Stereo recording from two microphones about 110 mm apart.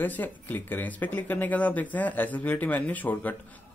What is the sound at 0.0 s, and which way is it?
Speech, 15° left (ahead or behind).